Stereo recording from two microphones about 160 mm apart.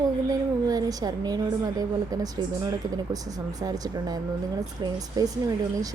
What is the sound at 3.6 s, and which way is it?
A woman's voice, 25° right (ahead or behind).